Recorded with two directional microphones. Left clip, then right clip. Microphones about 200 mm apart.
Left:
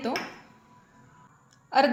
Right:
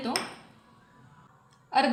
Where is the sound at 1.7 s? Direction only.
30° left (ahead or behind).